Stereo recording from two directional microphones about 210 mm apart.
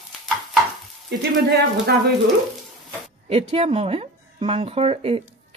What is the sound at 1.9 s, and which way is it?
Speech, 50° right (ahead or behind).